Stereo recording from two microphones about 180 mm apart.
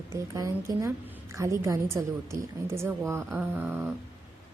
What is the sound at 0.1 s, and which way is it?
A woman's voice, 15° right (ahead or behind).